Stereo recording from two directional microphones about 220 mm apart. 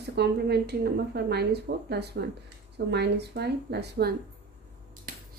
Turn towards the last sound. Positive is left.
turn(degrees=-50)  # may be behind; listen again after turning